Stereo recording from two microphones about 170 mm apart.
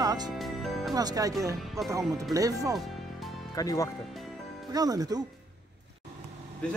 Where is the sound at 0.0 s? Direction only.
20° right (ahead or behind).